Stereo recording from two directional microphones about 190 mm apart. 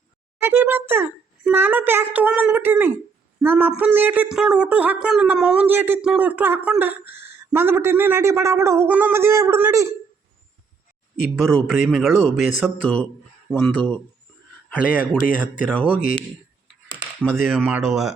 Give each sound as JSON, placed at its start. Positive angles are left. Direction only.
{"t": 0.4, "sound": "speech", "side_deg": -10}
{"t": 11.3, "sound": "a man's voice", "side_deg": 5}
{"t": 15.2, "sound": "speech", "side_deg": 45}
{"t": 17.2, "sound": "speech", "side_deg": 0}